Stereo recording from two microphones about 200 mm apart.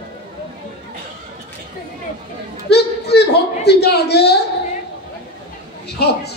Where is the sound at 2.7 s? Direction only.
55° left (ahead or behind).